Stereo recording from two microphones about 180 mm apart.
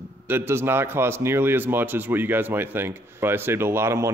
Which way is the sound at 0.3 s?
15° right (ahead or behind).